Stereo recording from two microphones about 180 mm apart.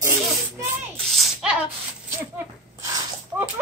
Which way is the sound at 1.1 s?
5° right (ahead or behind).